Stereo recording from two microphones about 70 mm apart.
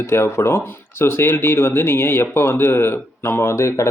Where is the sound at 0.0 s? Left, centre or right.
Left.